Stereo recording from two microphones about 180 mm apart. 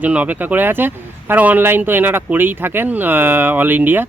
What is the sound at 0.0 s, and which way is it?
Speech, 10° right (ahead or behind).